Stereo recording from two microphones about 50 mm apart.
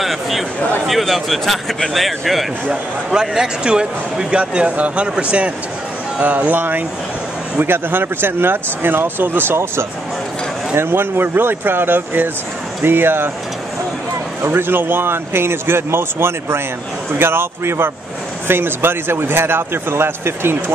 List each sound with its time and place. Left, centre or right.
0.0 s a man's voice: centre
2.7 s speech: centre
6.2 s speech: right
10.8 s speech: right
14.5 s speech: right